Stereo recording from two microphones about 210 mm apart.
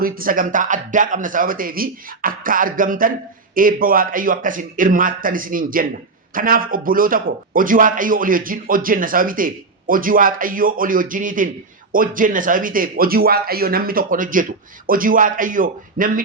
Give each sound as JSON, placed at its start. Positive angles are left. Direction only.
{"t": 0.0, "sound": "a man's voice", "side_deg": -40}